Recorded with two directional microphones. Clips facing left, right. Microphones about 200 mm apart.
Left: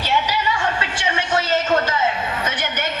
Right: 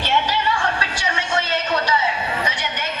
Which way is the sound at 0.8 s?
30° left (ahead or behind).